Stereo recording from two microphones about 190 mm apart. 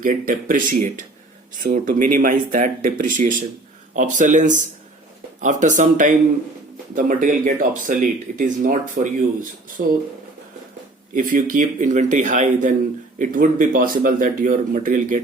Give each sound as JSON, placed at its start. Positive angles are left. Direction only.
{"t": 0.0, "sound": "speech", "side_deg": -45}
{"t": 11.1, "sound": "speech", "side_deg": -45}